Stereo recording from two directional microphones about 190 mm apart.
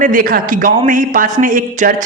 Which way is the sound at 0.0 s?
45° right (ahead or behind).